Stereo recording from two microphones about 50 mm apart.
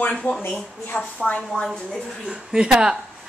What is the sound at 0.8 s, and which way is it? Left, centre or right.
Speech, left.